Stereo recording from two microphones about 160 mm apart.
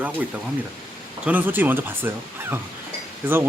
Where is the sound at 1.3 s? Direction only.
10° right (ahead or behind).